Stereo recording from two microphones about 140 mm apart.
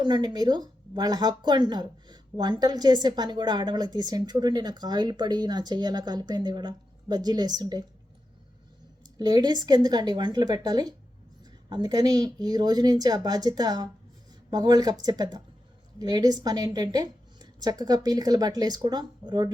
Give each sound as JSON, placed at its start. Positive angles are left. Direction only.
{"t": 0.0, "sound": "speech", "side_deg": -30}
{"t": 9.0, "sound": "a woman's voice", "side_deg": -30}